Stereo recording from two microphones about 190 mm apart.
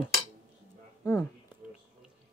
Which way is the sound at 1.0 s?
15° left (ahead or behind).